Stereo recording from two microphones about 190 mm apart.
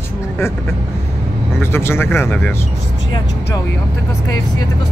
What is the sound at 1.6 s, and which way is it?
Speech, 15° left (ahead or behind).